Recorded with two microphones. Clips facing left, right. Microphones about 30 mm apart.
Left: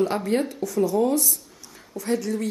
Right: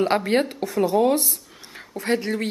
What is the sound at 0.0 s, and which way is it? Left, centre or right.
Speech, right.